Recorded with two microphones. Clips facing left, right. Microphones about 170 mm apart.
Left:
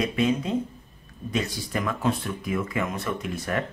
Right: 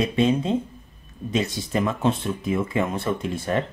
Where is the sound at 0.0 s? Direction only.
25° right (ahead or behind).